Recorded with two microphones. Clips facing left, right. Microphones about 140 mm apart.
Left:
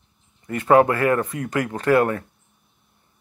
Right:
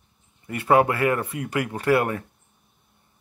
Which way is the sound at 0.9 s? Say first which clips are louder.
Left 3 dB; 40° left (ahead or behind).